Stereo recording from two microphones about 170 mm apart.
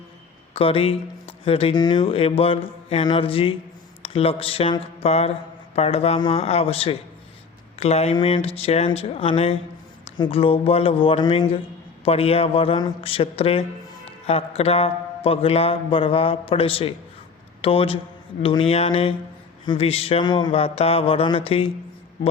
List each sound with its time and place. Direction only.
0.5 s speech: 35° left (ahead or behind)